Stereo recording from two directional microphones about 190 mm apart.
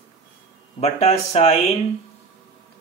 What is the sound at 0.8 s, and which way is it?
Speech, 35° left (ahead or behind).